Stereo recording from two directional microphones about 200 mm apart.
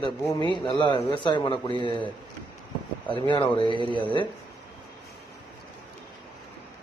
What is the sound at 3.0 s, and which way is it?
Speech, 25° left (ahead or behind).